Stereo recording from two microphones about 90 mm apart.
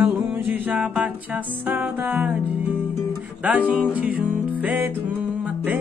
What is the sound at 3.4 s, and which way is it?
Music, 15° right (ahead or behind).